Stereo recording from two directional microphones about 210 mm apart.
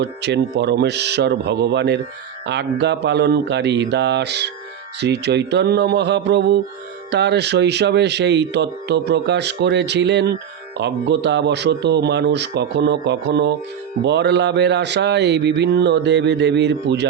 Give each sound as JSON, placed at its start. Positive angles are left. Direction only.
{"t": 0.0, "sound": "speech", "side_deg": -55}